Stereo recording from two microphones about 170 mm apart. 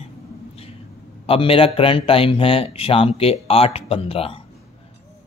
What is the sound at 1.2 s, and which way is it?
Speech, 30° left (ahead or behind).